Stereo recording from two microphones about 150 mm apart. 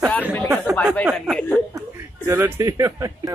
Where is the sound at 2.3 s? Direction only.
15° right (ahead or behind).